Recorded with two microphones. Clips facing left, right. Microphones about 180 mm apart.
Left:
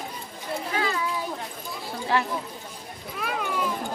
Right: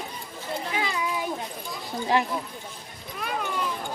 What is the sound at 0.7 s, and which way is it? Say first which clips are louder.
Children playing: left 2 dB; 15° right (ahead or behind).